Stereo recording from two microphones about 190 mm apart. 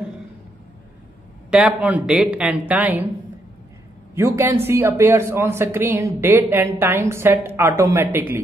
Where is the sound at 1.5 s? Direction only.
5° right (ahead or behind).